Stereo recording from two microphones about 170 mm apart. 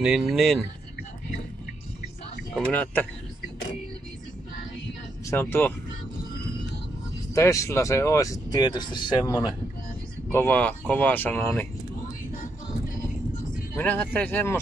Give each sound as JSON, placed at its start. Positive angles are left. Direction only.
{"t": 0.0, "sound": "speech", "side_deg": 0}
{"t": 2.5, "sound": "speech", "side_deg": 10}
{"t": 5.3, "sound": "speech", "side_deg": 15}
{"t": 7.3, "sound": "speech", "side_deg": 15}
{"t": 10.3, "sound": "speech", "side_deg": 10}
{"t": 13.7, "sound": "speech", "side_deg": 10}